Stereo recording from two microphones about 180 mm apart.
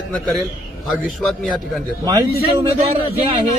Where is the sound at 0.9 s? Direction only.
Centre (ahead or behind).